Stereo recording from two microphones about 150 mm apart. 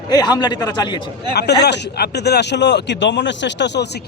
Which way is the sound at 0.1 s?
30° left (ahead or behind).